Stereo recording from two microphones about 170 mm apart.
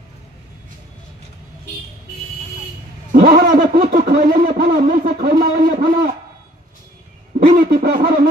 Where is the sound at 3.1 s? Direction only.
60° right (ahead or behind).